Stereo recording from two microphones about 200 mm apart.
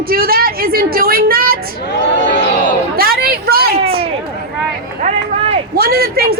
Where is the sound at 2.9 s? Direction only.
50° right (ahead or behind).